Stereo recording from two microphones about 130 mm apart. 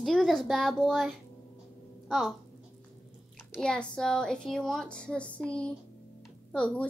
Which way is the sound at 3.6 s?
5° left (ahead or behind).